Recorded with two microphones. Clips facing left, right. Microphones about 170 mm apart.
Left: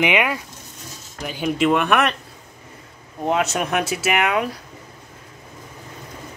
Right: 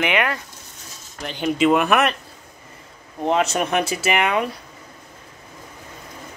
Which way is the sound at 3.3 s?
5° left (ahead or behind).